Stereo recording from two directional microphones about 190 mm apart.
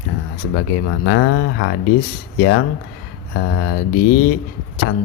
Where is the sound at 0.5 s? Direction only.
85° left.